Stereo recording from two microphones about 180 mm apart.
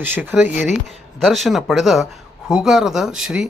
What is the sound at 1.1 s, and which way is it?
Speech, centre (ahead or behind).